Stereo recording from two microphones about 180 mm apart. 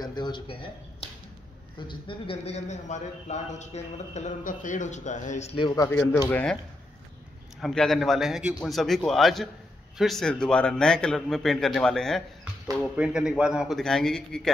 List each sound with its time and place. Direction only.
0.0 s a man's voice: 25° left (ahead or behind)
5.8 s speech: 15° left (ahead or behind)
7.6 s a man's voice: centre (ahead or behind)